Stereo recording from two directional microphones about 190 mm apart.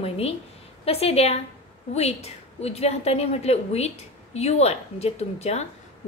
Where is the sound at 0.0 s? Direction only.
30° left (ahead or behind).